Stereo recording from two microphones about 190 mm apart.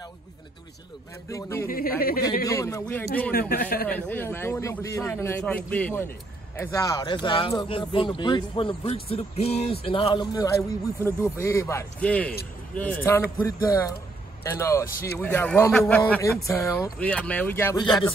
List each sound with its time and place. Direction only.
1.3 s a man's voice: 15° left (ahead or behind)
1.7 s a man's voice: 50° left (ahead or behind)
2.4 s a man's voice: 15° left (ahead or behind)
3.3 s a man's voice: 55° left (ahead or behind)
3.9 s a man's voice: 10° left (ahead or behind)
17.0 s a man's voice: 5° left (ahead or behind)
17.7 s speech: 25° left (ahead or behind)